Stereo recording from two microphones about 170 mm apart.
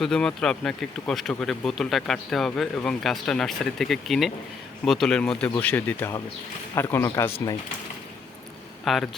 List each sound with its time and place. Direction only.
0.0 s speech: 5° left (ahead or behind)
8.8 s speech: centre (ahead or behind)